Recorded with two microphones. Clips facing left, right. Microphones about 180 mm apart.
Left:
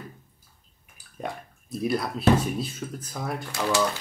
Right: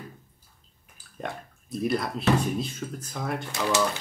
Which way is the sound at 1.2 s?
Centre (ahead or behind).